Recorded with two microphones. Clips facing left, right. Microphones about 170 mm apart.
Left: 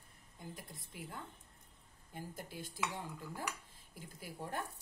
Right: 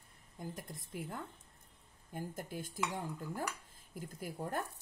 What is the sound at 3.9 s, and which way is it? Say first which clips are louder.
Speech: right 6 dB; 45° right (ahead or behind).